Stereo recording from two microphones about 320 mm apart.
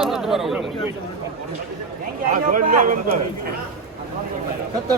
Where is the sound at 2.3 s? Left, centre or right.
Right.